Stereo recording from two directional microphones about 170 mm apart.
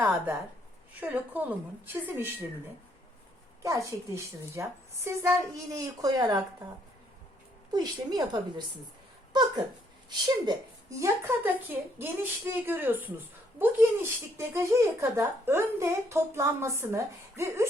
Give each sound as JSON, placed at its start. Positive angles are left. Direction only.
{"t": 1.0, "sound": "speech", "side_deg": -10}
{"t": 3.6, "sound": "a woman's voice", "side_deg": -20}
{"t": 7.7, "sound": "a woman's voice", "side_deg": -25}
{"t": 10.1, "sound": "speech", "side_deg": -25}